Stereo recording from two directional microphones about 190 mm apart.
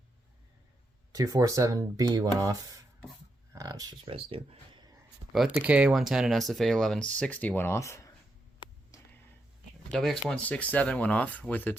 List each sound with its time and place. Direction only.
1.1 s speech: 20° right (ahead or behind)
5.3 s speech: 5° right (ahead or behind); by 8.1 s 15° left (ahead or behind)
9.9 s speech: centre (ahead or behind)